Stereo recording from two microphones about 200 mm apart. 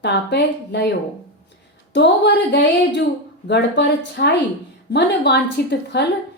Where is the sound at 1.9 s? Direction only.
60° left (ahead or behind).